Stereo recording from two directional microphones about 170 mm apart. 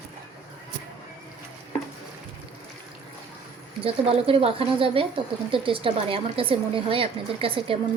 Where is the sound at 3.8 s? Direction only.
35° right (ahead or behind).